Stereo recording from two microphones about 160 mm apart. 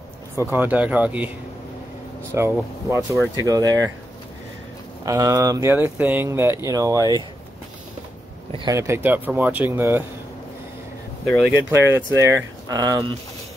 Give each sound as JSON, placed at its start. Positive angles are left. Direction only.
{"t": 0.4, "sound": "speech", "side_deg": -10}
{"t": 2.3, "sound": "speech", "side_deg": -15}
{"t": 5.0, "sound": "speech", "side_deg": -20}
{"t": 8.6, "sound": "speech", "side_deg": -15}
{"t": 11.2, "sound": "speech", "side_deg": 0}
{"t": 11.5, "sound": "speech", "side_deg": -15}